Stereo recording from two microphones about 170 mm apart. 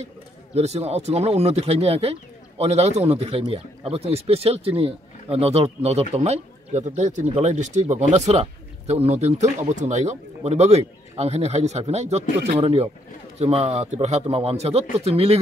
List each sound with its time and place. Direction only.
0.6 s speech: 40° right (ahead or behind)